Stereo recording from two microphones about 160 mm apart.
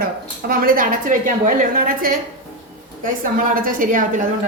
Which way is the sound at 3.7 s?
55° right (ahead or behind).